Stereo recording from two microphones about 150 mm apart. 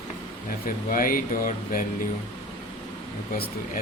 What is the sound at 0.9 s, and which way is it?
Speech, 70° left (ahead or behind).